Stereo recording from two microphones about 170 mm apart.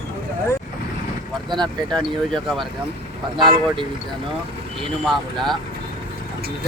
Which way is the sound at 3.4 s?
30° right (ahead or behind).